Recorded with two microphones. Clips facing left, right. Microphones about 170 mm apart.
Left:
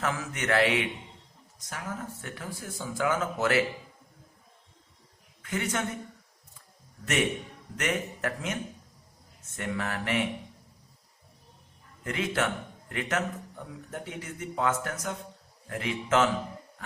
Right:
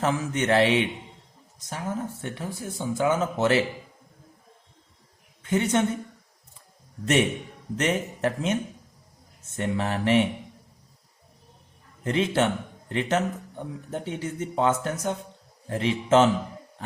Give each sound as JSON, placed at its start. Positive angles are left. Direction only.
{"t": 0.0, "sound": "speech", "side_deg": -25}
{"t": 5.4, "sound": "a woman's voice", "side_deg": -25}
{"t": 7.8, "sound": "speech", "side_deg": -30}
{"t": 9.6, "sound": "speech", "side_deg": -30}
{"t": 12.0, "sound": "speech", "side_deg": -30}